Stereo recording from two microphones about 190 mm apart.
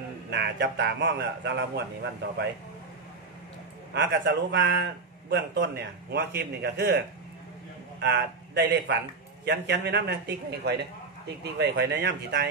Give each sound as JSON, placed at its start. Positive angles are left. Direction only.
{"t": 0.3, "sound": "a man's voice", "side_deg": -65}
{"t": 3.9, "sound": "a man's voice", "side_deg": -70}